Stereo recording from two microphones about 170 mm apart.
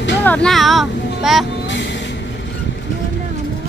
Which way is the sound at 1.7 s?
90° left.